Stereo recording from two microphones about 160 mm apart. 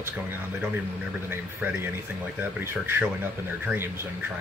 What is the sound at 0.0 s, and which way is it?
Speech, 15° right (ahead or behind).